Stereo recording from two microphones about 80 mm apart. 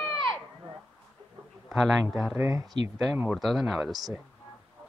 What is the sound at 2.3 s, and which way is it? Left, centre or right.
Speech, right.